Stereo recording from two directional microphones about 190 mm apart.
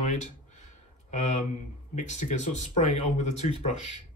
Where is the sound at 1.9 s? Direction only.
40° left (ahead or behind).